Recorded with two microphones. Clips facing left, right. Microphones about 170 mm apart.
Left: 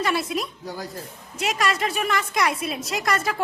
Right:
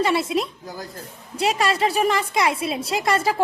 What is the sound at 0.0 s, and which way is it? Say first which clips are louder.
A woman's voice: right 4 dB; 25° right (ahead or behind).